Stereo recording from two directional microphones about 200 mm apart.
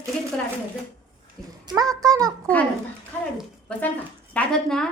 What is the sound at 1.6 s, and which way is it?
Speech, 15° right (ahead or behind).